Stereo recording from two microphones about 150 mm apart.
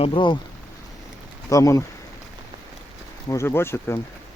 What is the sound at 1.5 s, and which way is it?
Speech, 20° left (ahead or behind).